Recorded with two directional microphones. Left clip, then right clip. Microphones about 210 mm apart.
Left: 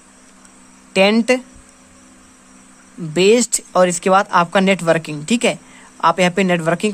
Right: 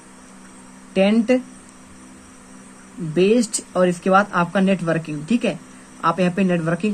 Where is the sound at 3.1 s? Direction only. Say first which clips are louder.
Left 4 dB; 45° left (ahead or behind).